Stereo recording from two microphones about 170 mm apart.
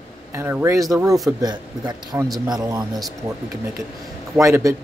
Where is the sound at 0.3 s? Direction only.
15° right (ahead or behind).